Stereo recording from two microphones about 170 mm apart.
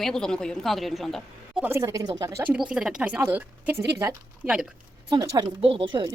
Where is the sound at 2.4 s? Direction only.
5° right (ahead or behind).